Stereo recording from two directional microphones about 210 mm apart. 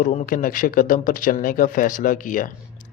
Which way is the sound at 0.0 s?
40° left (ahead or behind).